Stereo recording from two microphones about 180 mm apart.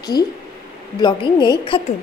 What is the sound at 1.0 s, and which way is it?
Speech, 25° left (ahead or behind).